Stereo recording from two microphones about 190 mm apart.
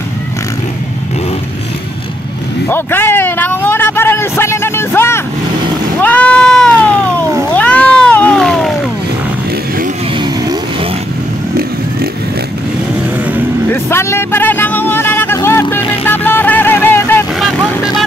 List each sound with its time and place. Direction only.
2.7 s a sound: 10° left (ahead or behind)
5.9 s cat: 5° left (ahead or behind)
10.2 s vehicle: 20° right (ahead or behind)
13.7 s vehicle: 15° left (ahead or behind)
15.7 s music: 10° left (ahead or behind)